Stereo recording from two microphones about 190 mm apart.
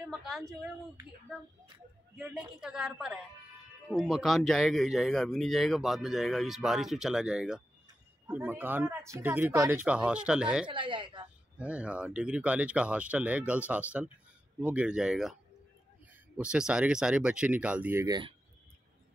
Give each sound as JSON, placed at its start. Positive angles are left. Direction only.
{"t": 0.1, "sound": "speech", "side_deg": 0}
{"t": 2.1, "sound": "speech", "side_deg": -5}
{"t": 10.7, "sound": "speech", "side_deg": -25}
{"t": 11.5, "sound": "speech", "side_deg": -5}
{"t": 16.3, "sound": "speech", "side_deg": -5}
{"t": 18.0, "sound": "speech", "side_deg": -20}